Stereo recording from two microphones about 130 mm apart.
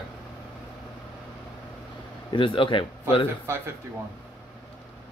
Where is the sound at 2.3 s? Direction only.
40° left (ahead or behind).